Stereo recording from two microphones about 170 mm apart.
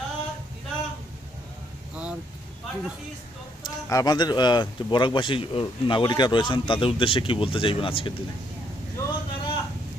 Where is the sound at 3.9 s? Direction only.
20° left (ahead or behind).